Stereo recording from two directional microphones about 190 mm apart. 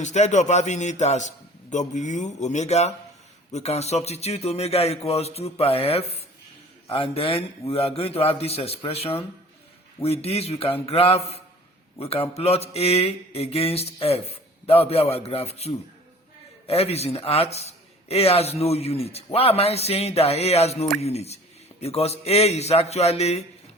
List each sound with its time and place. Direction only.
0.0 s a man's voice: 40° left (ahead or behind)